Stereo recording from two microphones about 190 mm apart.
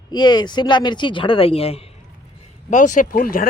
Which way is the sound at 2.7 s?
40° left (ahead or behind).